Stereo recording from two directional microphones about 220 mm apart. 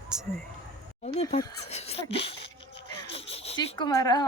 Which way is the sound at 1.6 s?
30° left (ahead or behind).